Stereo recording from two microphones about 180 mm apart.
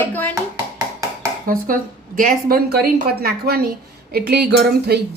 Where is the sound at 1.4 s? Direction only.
50° right (ahead or behind).